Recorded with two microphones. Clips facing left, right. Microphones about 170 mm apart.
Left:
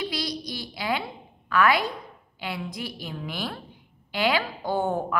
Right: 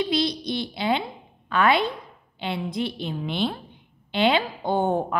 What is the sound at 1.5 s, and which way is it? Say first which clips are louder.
A woman's voice: right 1 dB; 25° right (ahead or behind).